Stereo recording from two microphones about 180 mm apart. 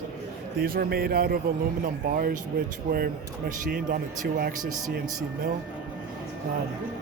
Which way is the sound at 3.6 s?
55° right (ahead or behind).